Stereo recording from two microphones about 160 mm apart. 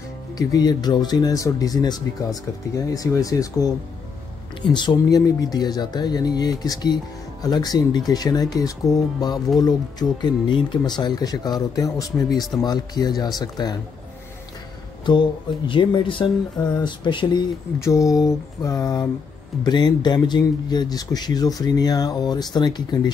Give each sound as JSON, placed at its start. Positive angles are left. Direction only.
{"t": 0.4, "sound": "speech", "side_deg": 25}
{"t": 15.0, "sound": "speech", "side_deg": 30}